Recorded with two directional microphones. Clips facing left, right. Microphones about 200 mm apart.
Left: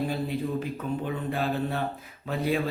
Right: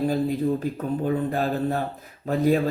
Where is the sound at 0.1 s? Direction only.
40° right (ahead or behind).